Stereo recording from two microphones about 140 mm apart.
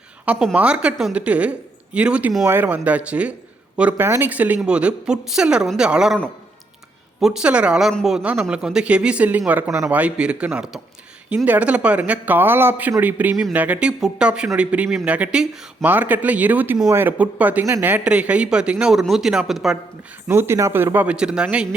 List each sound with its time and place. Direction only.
0.3 s speech: 5° right (ahead or behind)
7.2 s speech: 5° right (ahead or behind)
20.2 s speech: 15° right (ahead or behind)